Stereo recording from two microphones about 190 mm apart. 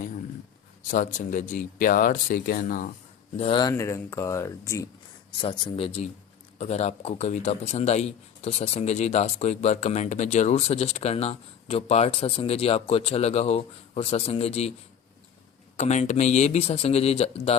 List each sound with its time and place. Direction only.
0.9 s speech: 40° left (ahead or behind)
3.3 s speech: 30° left (ahead or behind)
5.4 s a man's voice: 25° left (ahead or behind)
15.8 s a man's voice: 35° left (ahead or behind)